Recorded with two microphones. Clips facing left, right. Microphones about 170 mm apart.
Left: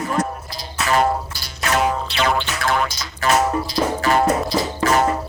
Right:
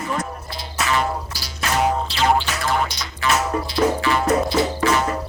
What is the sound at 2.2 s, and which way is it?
Music, 75° left (ahead or behind).